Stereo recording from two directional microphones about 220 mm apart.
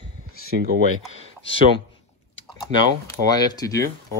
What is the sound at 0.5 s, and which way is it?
Speech, 40° right (ahead or behind).